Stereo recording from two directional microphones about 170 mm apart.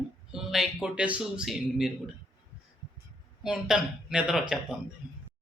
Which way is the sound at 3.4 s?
5° right (ahead or behind).